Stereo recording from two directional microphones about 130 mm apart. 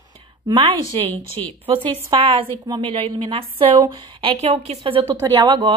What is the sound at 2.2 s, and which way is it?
Speech, 45° right (ahead or behind).